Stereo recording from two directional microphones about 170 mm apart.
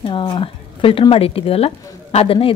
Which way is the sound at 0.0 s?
30° left (ahead or behind).